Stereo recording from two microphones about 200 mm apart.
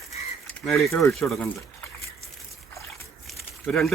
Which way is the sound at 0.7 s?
Centre (ahead or behind).